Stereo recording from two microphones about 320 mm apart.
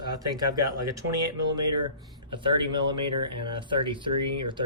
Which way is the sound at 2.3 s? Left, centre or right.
Centre.